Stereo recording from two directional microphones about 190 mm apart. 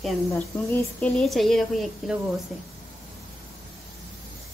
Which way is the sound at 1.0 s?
Centre (ahead or behind).